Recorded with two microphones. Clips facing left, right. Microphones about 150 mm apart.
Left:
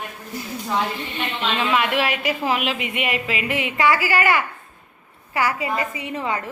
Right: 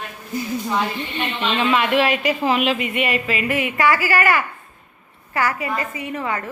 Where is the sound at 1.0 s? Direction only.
Centre (ahead or behind).